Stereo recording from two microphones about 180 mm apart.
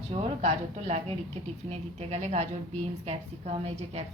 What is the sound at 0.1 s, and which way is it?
A woman's voice, 35° right (ahead or behind).